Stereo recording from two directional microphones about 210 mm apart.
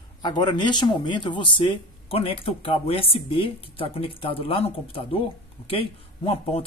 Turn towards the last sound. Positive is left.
turn(degrees=30)  # may be behind; listen again after turning